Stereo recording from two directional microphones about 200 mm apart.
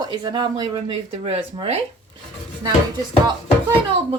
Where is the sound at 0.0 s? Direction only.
20° right (ahead or behind).